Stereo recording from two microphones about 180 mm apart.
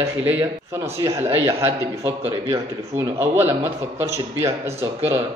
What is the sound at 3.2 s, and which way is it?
A man's voice, 10° right (ahead or behind).